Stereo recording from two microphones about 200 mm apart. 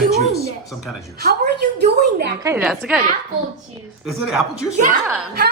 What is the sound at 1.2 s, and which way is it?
A woman's voice, 55° right (ahead or behind).